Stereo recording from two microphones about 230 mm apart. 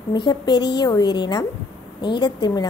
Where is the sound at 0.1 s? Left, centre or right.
Centre.